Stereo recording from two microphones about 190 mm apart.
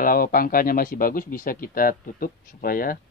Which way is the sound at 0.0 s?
50° left (ahead or behind).